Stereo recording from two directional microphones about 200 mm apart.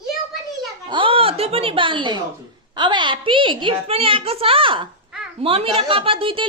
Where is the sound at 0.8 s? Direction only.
25° right (ahead or behind).